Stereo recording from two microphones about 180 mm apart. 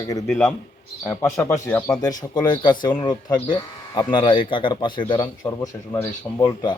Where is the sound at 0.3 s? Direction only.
5° left (ahead or behind).